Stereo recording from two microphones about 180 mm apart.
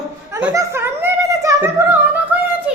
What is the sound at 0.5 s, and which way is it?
Music, 15° right (ahead or behind).